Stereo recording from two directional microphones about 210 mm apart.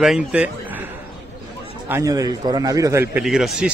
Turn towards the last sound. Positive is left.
turn(degrees=-5)  # may be behind; listen again after turning